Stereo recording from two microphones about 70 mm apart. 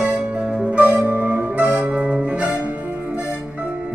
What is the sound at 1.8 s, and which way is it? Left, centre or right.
Music, centre.